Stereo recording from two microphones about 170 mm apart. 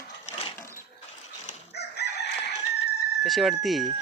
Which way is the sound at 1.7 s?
75° left (ahead or behind).